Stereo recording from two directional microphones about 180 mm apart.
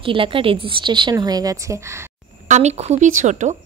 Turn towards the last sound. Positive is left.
turn(degrees=-40)  # may be behind; listen again after turning